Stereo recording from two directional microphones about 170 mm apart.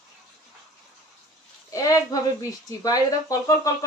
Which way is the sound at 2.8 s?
20° left (ahead or behind).